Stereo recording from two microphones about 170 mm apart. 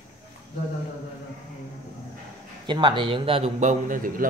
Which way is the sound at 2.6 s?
30° right (ahead or behind).